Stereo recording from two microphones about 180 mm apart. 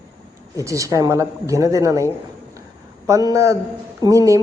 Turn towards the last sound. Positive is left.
turn(degrees=-15)  # may be behind; listen again after turning